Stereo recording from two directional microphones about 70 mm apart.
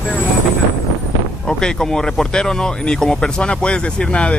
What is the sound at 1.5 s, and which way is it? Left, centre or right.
Speech, centre.